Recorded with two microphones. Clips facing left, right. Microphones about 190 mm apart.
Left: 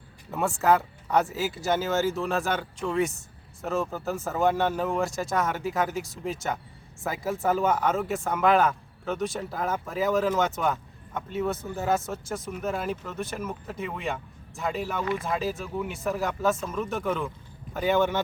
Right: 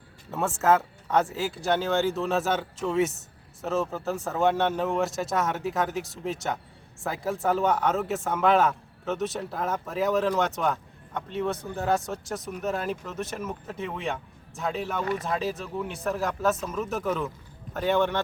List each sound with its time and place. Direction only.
0.3 s speech: centre (ahead or behind)